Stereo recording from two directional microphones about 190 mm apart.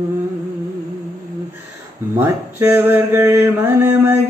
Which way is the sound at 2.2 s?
10° right (ahead or behind).